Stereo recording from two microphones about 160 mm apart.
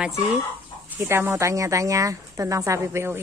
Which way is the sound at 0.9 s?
15° right (ahead or behind).